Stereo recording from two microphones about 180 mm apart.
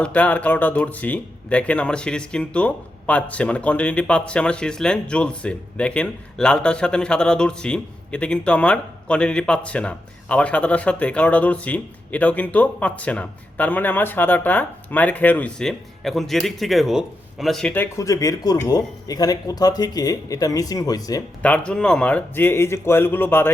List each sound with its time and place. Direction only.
0.0 s speech: 10° left (ahead or behind)
17.9 s speech: 20° left (ahead or behind)
21.4 s speech: 5° left (ahead or behind)